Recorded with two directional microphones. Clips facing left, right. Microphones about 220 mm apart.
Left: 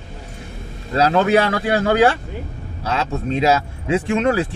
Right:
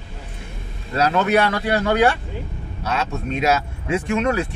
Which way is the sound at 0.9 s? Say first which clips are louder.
Left 3 dB; 30° left (ahead or behind).